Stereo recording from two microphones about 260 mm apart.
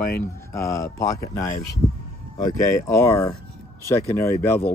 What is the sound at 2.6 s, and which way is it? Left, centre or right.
Speech, centre.